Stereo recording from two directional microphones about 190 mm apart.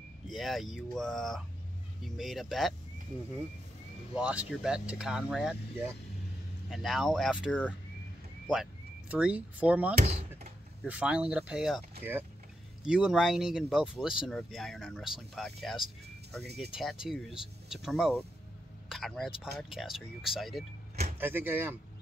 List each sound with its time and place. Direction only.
0.3 s speech: centre (ahead or behind)
4.1 s speech: 5° right (ahead or behind)
9.1 s speech: 5° right (ahead or behind)
10.0 s a sound: 35° right (ahead or behind)
10.8 s speech: 5° right (ahead or behind)